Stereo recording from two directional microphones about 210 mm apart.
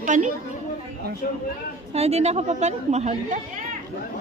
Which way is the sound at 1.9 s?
30° right (ahead or behind).